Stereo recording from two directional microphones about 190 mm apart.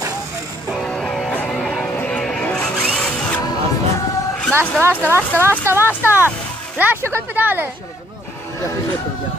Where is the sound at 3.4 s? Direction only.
20° left (ahead or behind).